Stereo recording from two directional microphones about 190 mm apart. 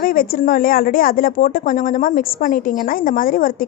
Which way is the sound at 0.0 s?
50° left (ahead or behind).